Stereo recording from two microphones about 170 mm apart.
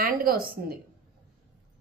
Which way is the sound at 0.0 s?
60° right (ahead or behind).